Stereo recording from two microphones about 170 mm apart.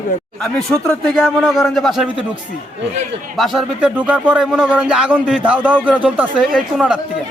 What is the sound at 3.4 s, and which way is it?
Speech, centre (ahead or behind).